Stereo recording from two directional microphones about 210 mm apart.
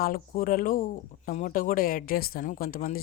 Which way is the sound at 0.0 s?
45° left (ahead or behind).